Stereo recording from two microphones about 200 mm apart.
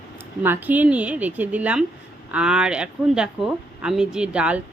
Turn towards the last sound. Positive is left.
turn(degrees=-5)  # may be behind; listen again after turning